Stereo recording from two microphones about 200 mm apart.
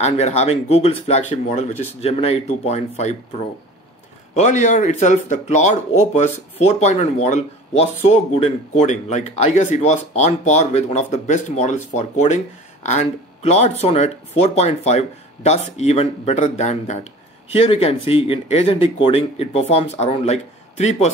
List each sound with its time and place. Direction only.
0.0 s speech: 35° left (ahead or behind)